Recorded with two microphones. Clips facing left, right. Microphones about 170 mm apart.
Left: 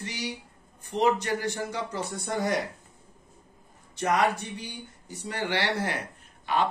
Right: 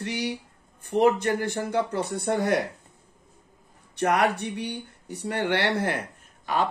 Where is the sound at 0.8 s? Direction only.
55° right (ahead or behind).